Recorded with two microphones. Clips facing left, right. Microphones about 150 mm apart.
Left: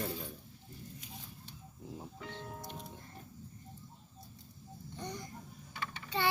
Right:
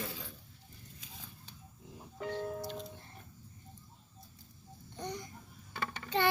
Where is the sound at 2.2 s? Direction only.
50° right (ahead or behind).